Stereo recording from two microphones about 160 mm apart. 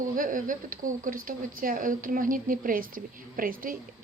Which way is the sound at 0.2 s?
55° right (ahead or behind).